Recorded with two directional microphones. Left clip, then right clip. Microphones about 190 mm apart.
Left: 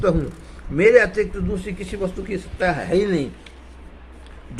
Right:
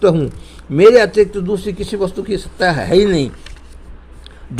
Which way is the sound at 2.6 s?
50° right (ahead or behind).